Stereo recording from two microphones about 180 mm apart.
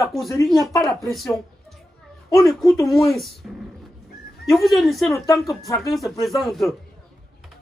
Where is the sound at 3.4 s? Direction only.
5° right (ahead or behind).